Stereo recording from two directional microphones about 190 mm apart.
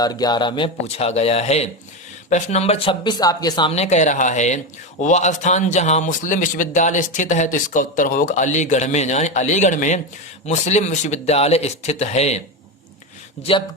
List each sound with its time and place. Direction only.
0.0 s speech: 20° left (ahead or behind)
3.8 s speech: 40° left (ahead or behind)